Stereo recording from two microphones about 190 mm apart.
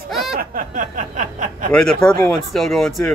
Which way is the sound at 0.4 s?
45° right (ahead or behind).